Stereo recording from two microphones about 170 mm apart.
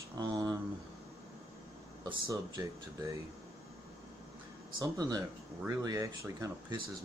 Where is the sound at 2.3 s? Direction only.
20° right (ahead or behind).